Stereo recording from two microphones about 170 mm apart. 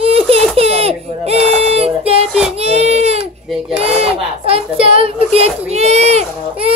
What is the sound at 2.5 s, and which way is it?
Baby cry, 40° right (ahead or behind).